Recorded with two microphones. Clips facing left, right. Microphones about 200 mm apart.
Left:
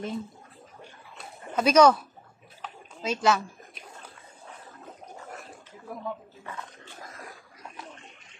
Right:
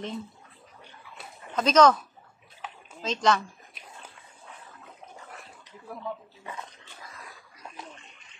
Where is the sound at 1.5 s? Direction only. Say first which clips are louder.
Left 1 dB; 10° left (ahead or behind).